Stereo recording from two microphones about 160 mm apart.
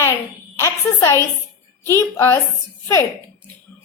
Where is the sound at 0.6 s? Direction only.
20° left (ahead or behind).